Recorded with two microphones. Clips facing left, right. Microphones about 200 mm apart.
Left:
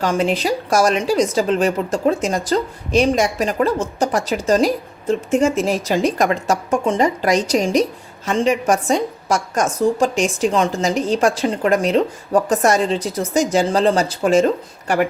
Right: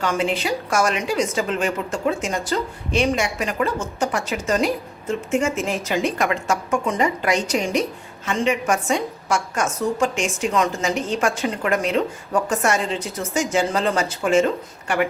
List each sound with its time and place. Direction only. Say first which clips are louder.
0.0 s speech: left 4 dB; 35° left (ahead or behind)